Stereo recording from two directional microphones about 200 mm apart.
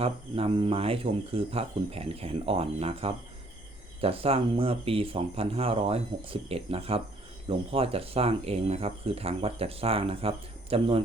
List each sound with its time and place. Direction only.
0.0 s speech: 30° right (ahead or behind)